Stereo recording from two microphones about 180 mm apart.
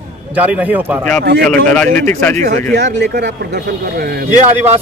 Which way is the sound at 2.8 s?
70° right (ahead or behind).